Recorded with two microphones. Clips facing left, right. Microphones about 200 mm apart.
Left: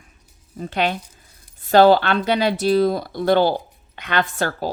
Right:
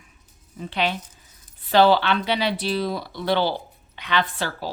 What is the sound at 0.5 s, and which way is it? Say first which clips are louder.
Speech: left 3 dB; 45° left (ahead or behind).